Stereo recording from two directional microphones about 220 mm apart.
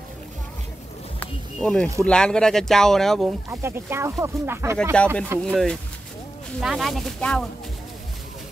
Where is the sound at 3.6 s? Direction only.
10° right (ahead or behind).